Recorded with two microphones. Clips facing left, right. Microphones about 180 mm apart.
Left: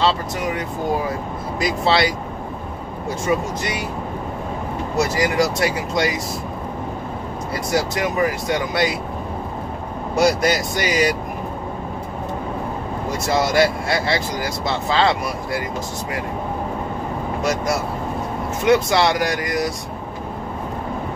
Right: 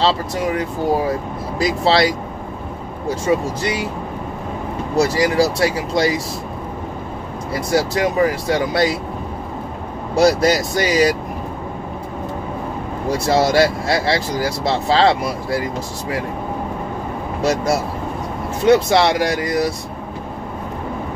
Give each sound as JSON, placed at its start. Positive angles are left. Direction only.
{"t": 1.6, "sound": "speech", "side_deg": -30}
{"t": 3.3, "sound": "speech", "side_deg": -30}
{"t": 4.9, "sound": "speech", "side_deg": -35}
{"t": 7.7, "sound": "speech", "side_deg": -30}
{"t": 10.1, "sound": "speech", "side_deg": -30}
{"t": 13.1, "sound": "speech", "side_deg": -35}
{"t": 17.4, "sound": "speech", "side_deg": -30}